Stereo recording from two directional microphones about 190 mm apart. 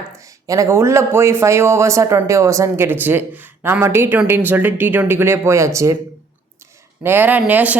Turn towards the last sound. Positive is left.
turn(degrees=-10)  # may be behind; listen again after turning